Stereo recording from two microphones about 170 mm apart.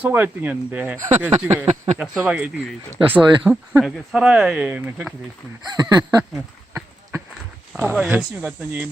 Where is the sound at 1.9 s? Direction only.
5° right (ahead or behind).